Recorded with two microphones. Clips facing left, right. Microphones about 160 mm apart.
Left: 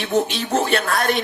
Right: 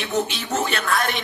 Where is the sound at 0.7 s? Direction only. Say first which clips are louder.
Left 3 dB; 40° left (ahead or behind).